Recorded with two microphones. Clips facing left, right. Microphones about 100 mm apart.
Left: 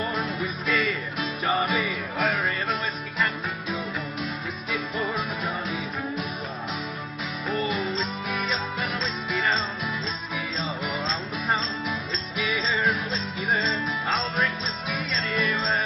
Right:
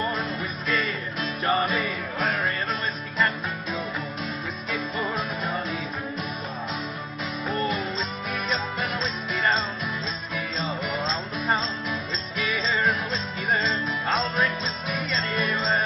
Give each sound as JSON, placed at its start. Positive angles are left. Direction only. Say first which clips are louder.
{"t": 0.2, "sound": "music", "louder": "left 1 dB", "side_deg": 0}
{"t": 4.6, "sound": "music", "louder": "even", "side_deg": 0}
{"t": 7.9, "sound": "music", "louder": "left 1 dB", "side_deg": 0}
{"t": 10.3, "sound": "music", "louder": "right 2 dB", "side_deg": 0}
{"t": 14.3, "sound": "music", "louder": "right 1 dB", "side_deg": 0}